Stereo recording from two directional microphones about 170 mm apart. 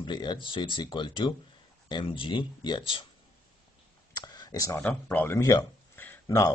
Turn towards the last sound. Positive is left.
turn(degrees=20)  # may be behind; listen again after turning